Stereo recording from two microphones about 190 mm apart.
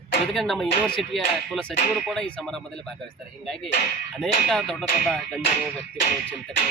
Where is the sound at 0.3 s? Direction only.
Centre (ahead or behind).